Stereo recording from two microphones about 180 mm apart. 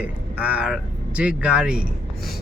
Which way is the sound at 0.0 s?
5° right (ahead or behind).